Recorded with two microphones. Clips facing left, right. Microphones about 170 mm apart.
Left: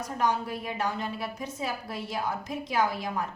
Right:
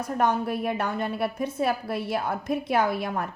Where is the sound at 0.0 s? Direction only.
55° right (ahead or behind).